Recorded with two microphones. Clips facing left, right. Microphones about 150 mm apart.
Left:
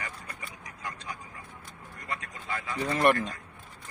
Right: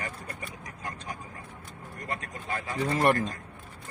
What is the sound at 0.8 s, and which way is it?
Vehicle, 45° right (ahead or behind).